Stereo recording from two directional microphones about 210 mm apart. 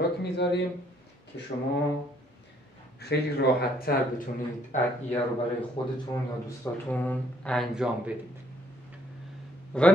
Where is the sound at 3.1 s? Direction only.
55° left (ahead or behind).